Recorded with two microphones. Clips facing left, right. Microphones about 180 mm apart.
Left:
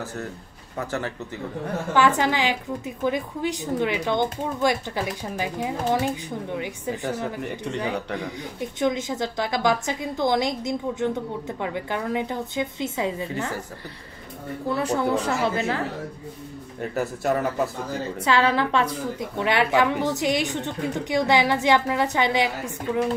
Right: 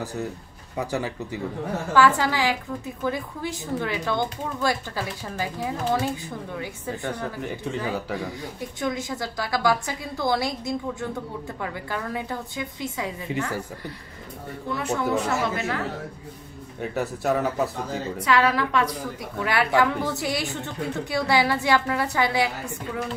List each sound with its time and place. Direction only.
0.0 s a man's voice: 15° right (ahead or behind)
2.0 s a woman's voice: 20° left (ahead or behind)
7.4 s speech: centre (ahead or behind)
8.2 s a woman's voice: 20° left (ahead or behind)
14.7 s speech: 35° left (ahead or behind)
16.8 s speech: centre (ahead or behind)
18.2 s a woman's voice: 25° left (ahead or behind)